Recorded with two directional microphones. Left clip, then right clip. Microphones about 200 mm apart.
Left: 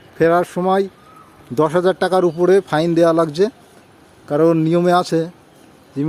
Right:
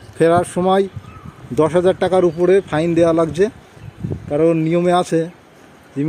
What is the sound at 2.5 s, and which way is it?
Speech, 20° left (ahead or behind).